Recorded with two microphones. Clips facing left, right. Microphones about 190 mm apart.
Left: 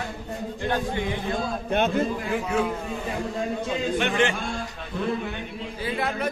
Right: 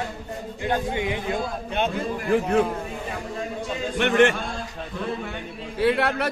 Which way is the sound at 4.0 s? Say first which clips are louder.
Right 7 dB; 60° right (ahead or behind).